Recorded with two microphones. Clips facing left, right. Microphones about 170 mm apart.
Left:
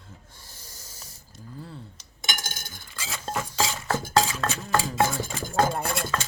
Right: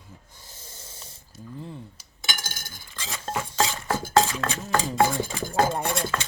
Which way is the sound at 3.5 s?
Centre (ahead or behind).